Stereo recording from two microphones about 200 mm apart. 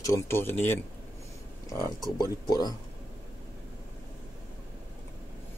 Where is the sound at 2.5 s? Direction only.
20° left (ahead or behind).